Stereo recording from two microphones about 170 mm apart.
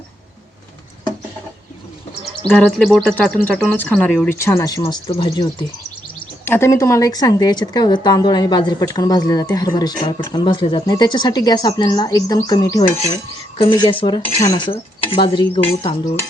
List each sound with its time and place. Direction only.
2.5 s speech: 5° left (ahead or behind); by 5.6 s 30° left (ahead or behind)
6.4 s speech: 15° left (ahead or behind); by 15.6 s 30° left (ahead or behind)